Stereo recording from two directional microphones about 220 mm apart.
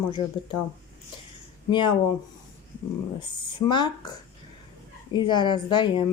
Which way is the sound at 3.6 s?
20° left (ahead or behind).